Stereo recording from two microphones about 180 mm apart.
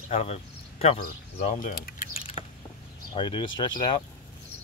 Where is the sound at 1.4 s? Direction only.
45° left (ahead or behind).